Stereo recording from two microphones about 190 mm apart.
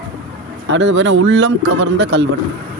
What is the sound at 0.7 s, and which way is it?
Speech, 70° right (ahead or behind).